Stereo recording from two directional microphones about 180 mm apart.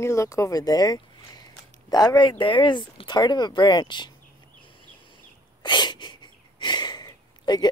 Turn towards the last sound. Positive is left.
turn(degrees=25)  # may be behind; listen again after turning